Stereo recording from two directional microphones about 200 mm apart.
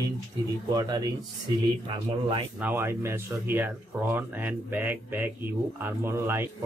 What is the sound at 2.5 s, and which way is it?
Speech, 10° right (ahead or behind).